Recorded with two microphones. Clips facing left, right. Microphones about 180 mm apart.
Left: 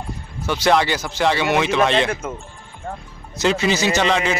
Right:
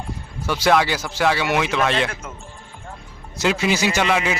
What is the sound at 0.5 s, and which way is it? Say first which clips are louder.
A man's voice: left 1 dB; 5° right (ahead or behind).